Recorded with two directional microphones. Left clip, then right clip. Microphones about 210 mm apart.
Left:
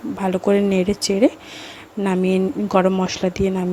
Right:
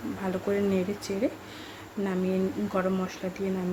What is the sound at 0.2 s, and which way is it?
A woman's voice, 35° left (ahead or behind).